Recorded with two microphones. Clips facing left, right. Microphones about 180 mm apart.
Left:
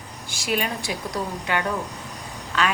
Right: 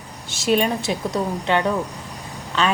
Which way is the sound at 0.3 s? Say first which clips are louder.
Right 7 dB; 25° right (ahead or behind).